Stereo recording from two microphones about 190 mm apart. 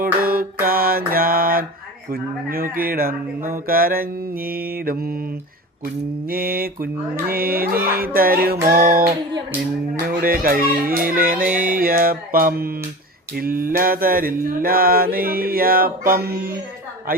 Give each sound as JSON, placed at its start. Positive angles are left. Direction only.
{"t": 0.0, "sound": "mantra", "side_deg": -50}
{"t": 6.2, "sound": "mantra", "side_deg": -50}
{"t": 10.2, "sound": "mantra", "side_deg": -50}